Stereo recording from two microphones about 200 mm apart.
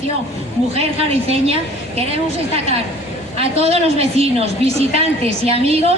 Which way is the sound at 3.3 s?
30° right (ahead or behind).